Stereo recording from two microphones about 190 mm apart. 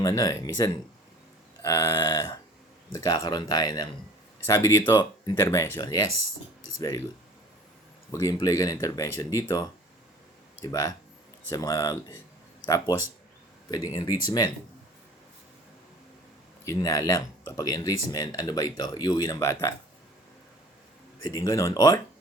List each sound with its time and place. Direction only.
0.0 s speech: 15° left (ahead or behind)
8.1 s speech: 20° left (ahead or behind)
16.6 s speech: 15° left (ahead or behind)
21.2 s speech: 20° left (ahead or behind)